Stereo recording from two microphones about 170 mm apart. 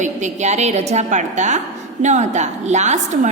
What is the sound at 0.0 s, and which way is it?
A woman's voice, 45° right (ahead or behind).